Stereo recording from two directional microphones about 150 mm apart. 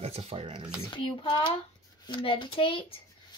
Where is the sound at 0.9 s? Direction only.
35° left (ahead or behind).